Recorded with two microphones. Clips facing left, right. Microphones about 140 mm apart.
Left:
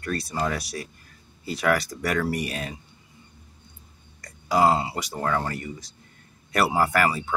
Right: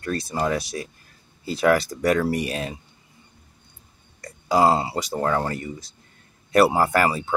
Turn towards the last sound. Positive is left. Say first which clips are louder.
# right 2 dB
turn(degrees=-30)  # may be behind; listen again after turning